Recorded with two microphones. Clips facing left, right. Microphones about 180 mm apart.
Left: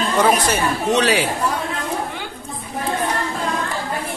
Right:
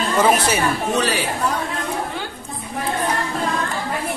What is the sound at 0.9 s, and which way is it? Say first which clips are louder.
Speech: left 7 dB; 75° left (ahead or behind).